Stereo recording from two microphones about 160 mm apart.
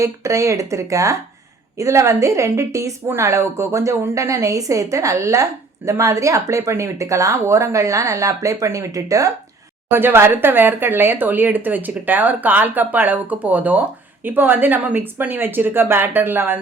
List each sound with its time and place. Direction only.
0.0 s a woman's voice: 20° right (ahead or behind)